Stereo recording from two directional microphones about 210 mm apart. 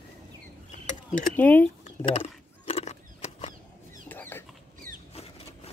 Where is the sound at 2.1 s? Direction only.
25° left (ahead or behind).